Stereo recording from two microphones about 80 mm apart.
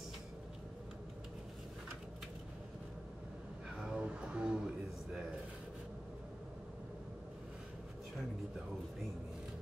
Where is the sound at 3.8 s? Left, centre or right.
Centre.